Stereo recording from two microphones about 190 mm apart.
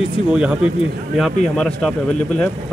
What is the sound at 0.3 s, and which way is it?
Speech, 5° right (ahead or behind).